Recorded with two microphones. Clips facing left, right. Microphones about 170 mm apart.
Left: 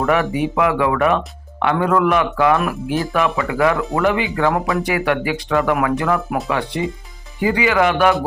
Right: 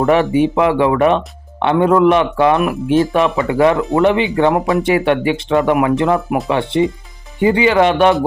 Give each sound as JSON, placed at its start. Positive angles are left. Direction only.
{"t": 0.0, "sound": "speech", "side_deg": -25}